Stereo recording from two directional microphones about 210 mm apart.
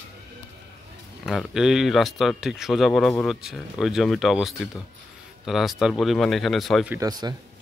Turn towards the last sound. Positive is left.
turn(degrees=-15)  # may be behind; listen again after turning